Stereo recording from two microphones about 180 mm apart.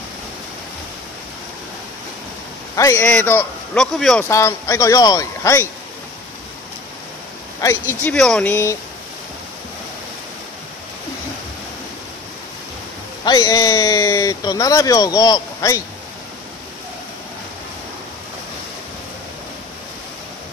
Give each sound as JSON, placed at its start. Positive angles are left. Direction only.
{"t": 2.7, "sound": "a man's voice", "side_deg": 20}
{"t": 4.2, "sound": "speech", "side_deg": 15}
{"t": 7.9, "sound": "speech", "side_deg": 10}
{"t": 13.2, "sound": "speech", "side_deg": 20}